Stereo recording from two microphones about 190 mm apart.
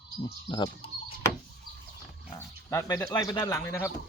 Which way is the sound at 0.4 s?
20° left (ahead or behind).